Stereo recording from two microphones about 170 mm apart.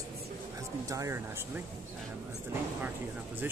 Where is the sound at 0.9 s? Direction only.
20° right (ahead or behind).